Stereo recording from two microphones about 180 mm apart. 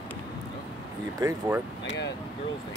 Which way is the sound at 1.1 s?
15° right (ahead or behind).